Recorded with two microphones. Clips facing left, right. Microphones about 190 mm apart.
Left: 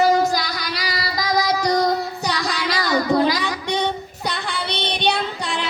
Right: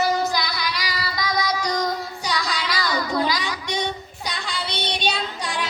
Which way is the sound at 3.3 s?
55° left (ahead or behind).